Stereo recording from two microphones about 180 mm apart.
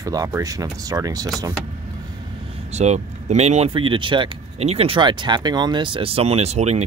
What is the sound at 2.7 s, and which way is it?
Speech, 40° right (ahead or behind).